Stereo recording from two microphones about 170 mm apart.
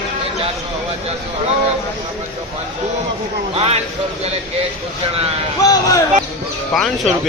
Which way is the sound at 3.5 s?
35° right (ahead or behind).